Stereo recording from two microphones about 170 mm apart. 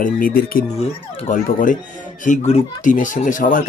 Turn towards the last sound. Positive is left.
turn(degrees=50)  # may be behind; listen again after turning